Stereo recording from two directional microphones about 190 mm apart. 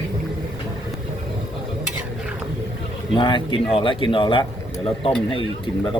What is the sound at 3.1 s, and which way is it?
Speech, 25° left (ahead or behind).